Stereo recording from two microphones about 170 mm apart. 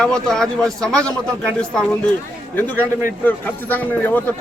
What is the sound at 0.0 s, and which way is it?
A man's voice, 5° left (ahead or behind).